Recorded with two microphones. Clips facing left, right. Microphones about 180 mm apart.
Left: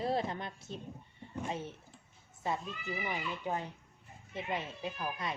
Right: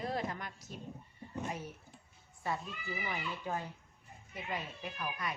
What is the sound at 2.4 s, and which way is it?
A woman's voice, 20° left (ahead or behind).